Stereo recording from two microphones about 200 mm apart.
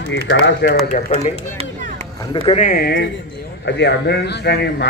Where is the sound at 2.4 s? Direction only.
35° left (ahead or behind).